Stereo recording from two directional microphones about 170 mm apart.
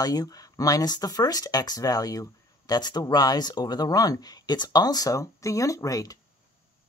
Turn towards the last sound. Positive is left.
turn(degrees=20)  # may be behind; listen again after turning